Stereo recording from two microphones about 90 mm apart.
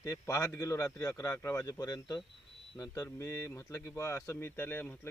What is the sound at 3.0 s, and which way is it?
Speech, 30° left (ahead or behind).